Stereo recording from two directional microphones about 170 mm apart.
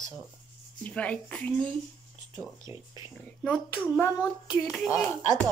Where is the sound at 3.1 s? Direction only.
5° left (ahead or behind).